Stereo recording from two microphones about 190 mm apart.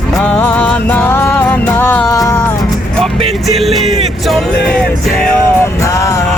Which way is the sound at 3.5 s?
Centre (ahead or behind).